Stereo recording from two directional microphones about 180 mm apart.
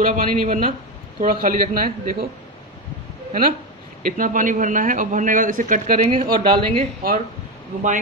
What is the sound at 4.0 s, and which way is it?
A man's voice, 50° right (ahead or behind).